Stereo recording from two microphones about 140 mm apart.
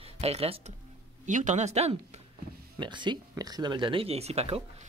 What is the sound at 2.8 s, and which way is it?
Speech, 35° right (ahead or behind).